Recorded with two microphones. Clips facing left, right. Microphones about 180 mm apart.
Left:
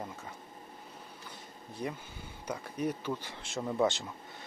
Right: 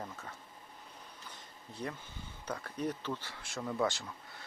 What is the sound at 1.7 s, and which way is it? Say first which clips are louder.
Speech: left 3 dB; 10° left (ahead or behind).